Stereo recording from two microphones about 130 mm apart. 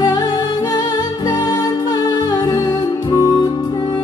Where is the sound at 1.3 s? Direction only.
30° left (ahead or behind).